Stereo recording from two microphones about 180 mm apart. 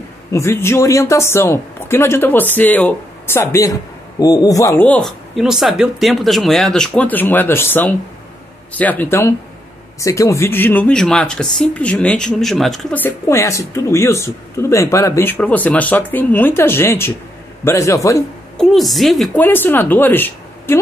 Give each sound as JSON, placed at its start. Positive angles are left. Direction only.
{"t": 0.3, "sound": "speech", "side_deg": 15}
{"t": 18.6, "sound": "speech", "side_deg": 0}